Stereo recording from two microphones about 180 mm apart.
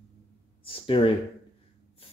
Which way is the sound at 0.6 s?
30° left (ahead or behind).